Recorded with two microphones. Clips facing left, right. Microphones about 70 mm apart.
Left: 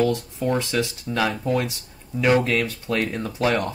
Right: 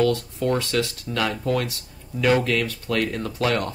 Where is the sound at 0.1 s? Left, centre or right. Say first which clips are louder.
Even; centre.